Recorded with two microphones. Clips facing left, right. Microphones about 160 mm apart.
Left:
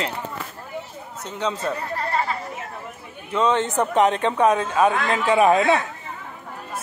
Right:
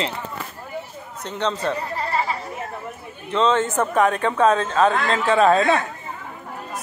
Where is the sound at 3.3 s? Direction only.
15° left (ahead or behind).